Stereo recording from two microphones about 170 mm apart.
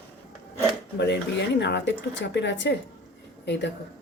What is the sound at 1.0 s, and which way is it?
Speech, 85° left.